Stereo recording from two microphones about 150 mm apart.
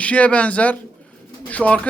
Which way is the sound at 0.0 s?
10° left (ahead or behind).